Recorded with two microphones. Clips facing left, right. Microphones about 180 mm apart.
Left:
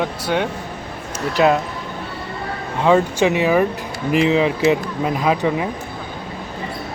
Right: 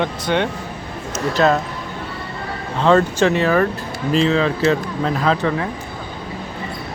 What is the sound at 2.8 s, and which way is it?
Speech, 10° left (ahead or behind).